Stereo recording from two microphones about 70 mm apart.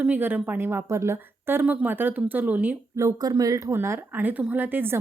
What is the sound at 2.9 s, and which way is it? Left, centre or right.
Speech, right.